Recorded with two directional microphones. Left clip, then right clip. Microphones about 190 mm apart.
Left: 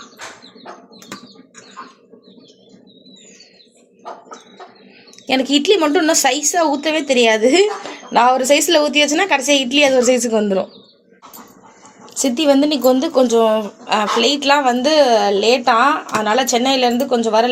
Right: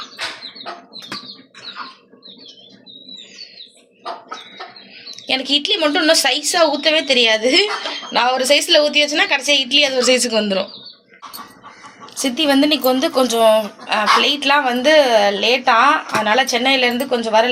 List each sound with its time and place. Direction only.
5.2 s a woman's voice: 60° left (ahead or behind)
12.1 s a woman's voice: 60° left (ahead or behind)